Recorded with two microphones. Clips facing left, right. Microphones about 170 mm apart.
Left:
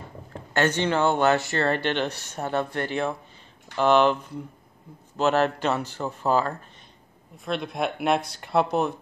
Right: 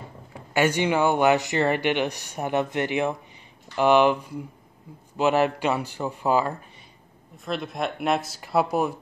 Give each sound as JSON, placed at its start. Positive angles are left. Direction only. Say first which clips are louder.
{"t": 0.3, "sound": "speech", "louder": "right 1 dB", "side_deg": -10}
{"t": 7.4, "sound": "speech", "louder": "left 1 dB", "side_deg": 0}